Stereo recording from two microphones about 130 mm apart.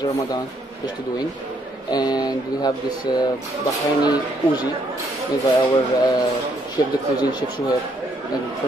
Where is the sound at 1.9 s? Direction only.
30° left (ahead or behind).